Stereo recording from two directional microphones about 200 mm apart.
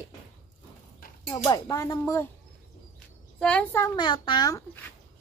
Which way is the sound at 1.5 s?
15° left (ahead or behind).